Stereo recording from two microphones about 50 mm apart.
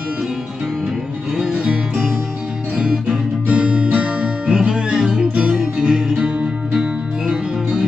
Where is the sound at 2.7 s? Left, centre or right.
Centre.